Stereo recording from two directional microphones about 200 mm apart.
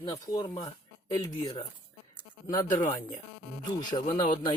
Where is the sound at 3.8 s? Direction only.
20° left (ahead or behind).